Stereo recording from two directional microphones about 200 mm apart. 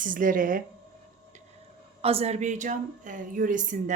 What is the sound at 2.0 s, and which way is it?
Speech, 30° right (ahead or behind).